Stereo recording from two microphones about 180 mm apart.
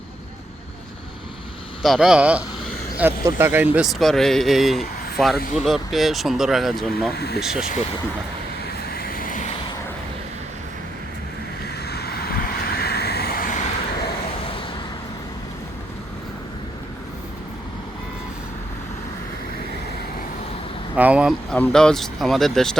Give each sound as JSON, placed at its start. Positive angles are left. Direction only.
{"t": 1.8, "sound": "speech", "side_deg": 0}
{"t": 7.1, "sound": "speech", "side_deg": 65}
{"t": 7.4, "sound": "speech", "side_deg": 0}
{"t": 8.9, "sound": "vehicle", "side_deg": 55}
{"t": 11.9, "sound": "vehicle", "side_deg": 60}
{"t": 20.9, "sound": "speech", "side_deg": -10}
{"t": 21.5, "sound": "speech", "side_deg": 5}